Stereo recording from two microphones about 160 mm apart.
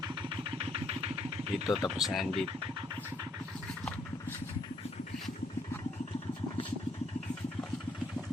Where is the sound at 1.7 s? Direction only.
Centre (ahead or behind).